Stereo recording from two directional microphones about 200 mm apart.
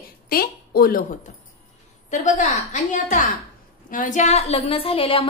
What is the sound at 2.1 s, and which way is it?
A woman's voice, 35° left (ahead or behind).